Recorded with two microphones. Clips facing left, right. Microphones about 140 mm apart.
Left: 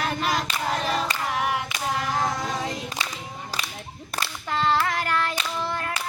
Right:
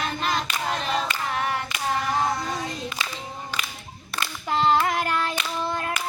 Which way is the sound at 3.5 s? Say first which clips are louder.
Left 1 dB; 40° left (ahead or behind).